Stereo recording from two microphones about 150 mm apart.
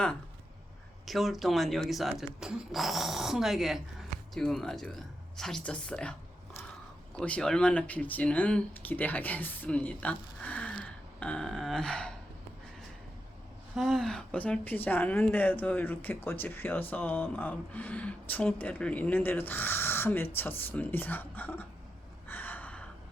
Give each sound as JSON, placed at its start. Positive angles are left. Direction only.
{"t": 1.0, "sound": "speech", "side_deg": 0}
{"t": 7.2, "sound": "speech", "side_deg": 5}
{"t": 13.7, "sound": "speech", "side_deg": 0}
{"t": 22.3, "sound": "gasp", "side_deg": 10}